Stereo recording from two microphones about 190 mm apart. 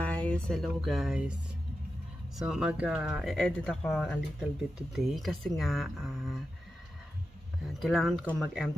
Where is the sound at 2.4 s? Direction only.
5° right (ahead or behind).